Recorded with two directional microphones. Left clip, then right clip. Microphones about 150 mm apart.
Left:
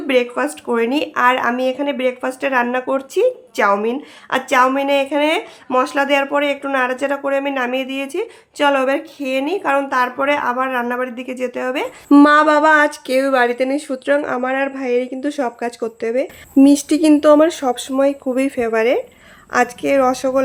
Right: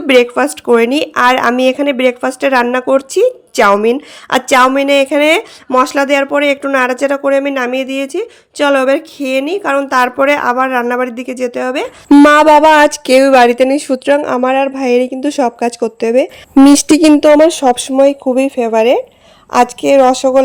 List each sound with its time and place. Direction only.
0.1 s speech: 50° right (ahead or behind); by 18.2 s 30° right (ahead or behind)
18.3 s speech: 20° right (ahead or behind)